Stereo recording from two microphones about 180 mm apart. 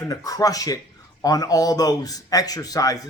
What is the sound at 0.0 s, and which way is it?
A man's voice, 20° left (ahead or behind).